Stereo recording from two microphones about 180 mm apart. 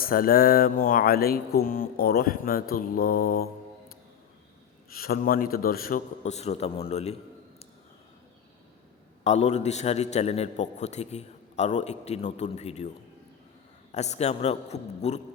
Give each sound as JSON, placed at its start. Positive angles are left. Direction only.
{"t": 0.0, "sound": "speech", "side_deg": 50}
{"t": 4.9, "sound": "a man's voice", "side_deg": 55}
{"t": 9.2, "sound": "a man's voice", "side_deg": 40}
{"t": 13.9, "sound": "a man's voice", "side_deg": 40}